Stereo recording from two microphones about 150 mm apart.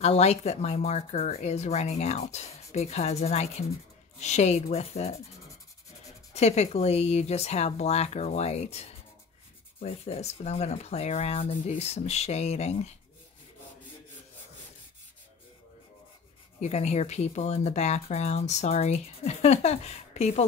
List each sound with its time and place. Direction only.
0.0 s speech: 45° left (ahead or behind)
6.3 s speech: 45° left (ahead or behind)
9.8 s speech: 45° left (ahead or behind)
16.5 s speech: 50° left (ahead or behind)